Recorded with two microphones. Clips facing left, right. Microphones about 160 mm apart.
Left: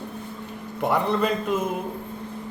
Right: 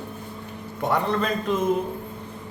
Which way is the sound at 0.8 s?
10° left (ahead or behind).